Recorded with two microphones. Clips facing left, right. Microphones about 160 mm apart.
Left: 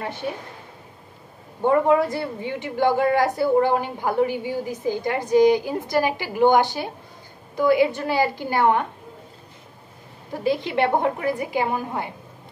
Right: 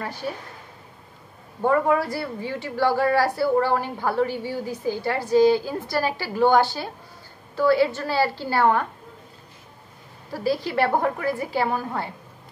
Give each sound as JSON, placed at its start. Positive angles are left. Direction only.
{"t": 0.0, "sound": "a woman's voice", "side_deg": 25}
{"t": 1.6, "sound": "a woman's voice", "side_deg": 20}
{"t": 10.3, "sound": "a woman's voice", "side_deg": 20}